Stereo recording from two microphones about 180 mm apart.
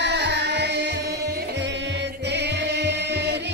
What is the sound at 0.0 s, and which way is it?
Music, 70° right (ahead or behind).